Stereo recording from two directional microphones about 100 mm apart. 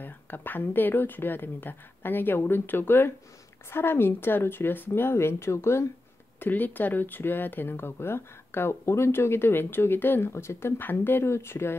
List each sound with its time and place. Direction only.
0.0 s speech: 20° left (ahead or behind)